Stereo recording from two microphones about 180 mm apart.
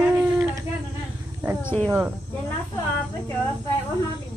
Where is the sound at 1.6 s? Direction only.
10° left (ahead or behind).